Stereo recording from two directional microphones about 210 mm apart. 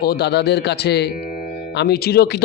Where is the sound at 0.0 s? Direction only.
50° left (ahead or behind).